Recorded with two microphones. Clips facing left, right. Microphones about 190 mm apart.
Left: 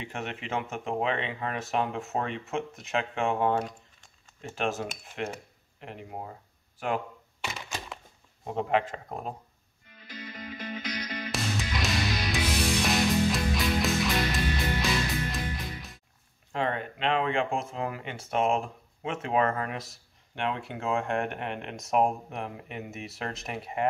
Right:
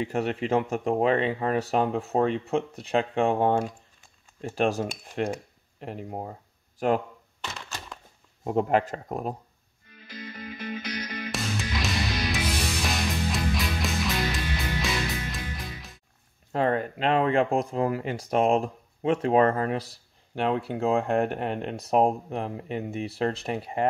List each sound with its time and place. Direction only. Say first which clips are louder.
0.0 s speech: right 9 dB; 35° right (ahead or behind)
7.4 s typewriter: left 1 dB; 5° left (ahead or behind)
8.5 s a man's voice: right 4 dB; 45° right (ahead or behind)
11.3 s music: right 1 dB; centre (ahead or behind)
16.5 s speech: right 6 dB; 40° right (ahead or behind)